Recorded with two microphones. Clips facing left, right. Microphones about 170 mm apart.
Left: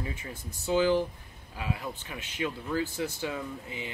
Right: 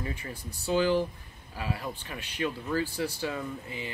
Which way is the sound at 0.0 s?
15° left (ahead or behind).